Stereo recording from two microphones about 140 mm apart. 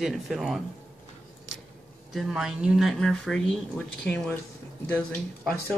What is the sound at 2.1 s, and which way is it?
Speech, centre (ahead or behind).